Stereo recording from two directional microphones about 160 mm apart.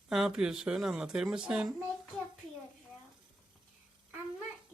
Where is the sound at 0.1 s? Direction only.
5° right (ahead or behind).